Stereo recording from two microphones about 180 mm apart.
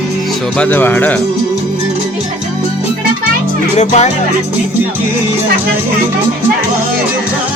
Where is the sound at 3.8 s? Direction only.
40° left (ahead or behind).